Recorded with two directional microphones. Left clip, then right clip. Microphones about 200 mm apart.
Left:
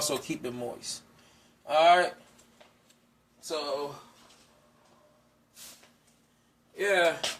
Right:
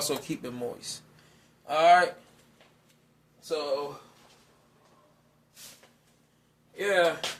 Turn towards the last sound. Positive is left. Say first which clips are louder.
# right 1 dB
turn(degrees=-10)  # may be behind; listen again after turning